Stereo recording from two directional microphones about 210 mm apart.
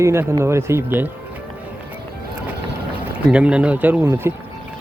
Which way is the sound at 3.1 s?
5° right (ahead or behind).